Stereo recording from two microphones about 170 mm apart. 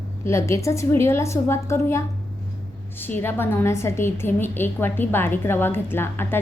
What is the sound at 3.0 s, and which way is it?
A woman's voice, 10° left (ahead or behind).